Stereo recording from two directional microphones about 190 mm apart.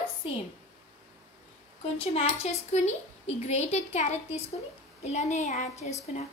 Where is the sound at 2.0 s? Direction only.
30° left (ahead or behind).